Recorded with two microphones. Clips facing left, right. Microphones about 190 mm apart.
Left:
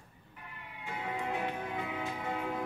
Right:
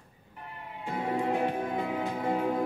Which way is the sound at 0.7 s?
40° right (ahead or behind).